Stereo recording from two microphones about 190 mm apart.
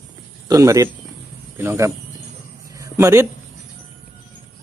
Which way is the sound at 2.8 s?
15° right (ahead or behind).